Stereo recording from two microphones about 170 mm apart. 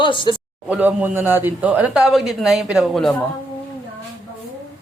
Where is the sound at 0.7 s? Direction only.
10° right (ahead or behind).